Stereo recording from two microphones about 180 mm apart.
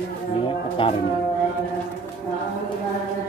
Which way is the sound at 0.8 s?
30° left (ahead or behind).